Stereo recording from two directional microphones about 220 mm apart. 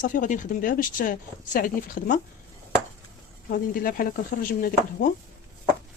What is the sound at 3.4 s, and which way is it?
Speech, 40° left (ahead or behind).